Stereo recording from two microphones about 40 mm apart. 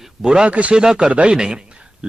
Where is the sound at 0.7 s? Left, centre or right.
Centre.